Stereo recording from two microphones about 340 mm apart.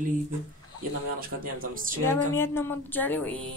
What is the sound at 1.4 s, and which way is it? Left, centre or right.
Speech, right.